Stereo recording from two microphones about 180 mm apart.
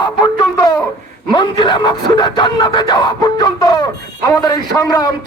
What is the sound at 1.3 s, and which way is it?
Speech, 25° left (ahead or behind).